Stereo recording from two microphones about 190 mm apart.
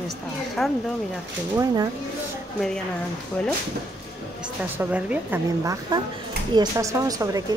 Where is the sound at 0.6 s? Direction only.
Centre (ahead or behind).